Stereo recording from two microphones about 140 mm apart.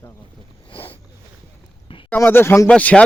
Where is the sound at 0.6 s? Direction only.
40° left (ahead or behind).